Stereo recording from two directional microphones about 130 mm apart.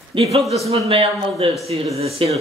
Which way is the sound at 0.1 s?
50° right (ahead or behind).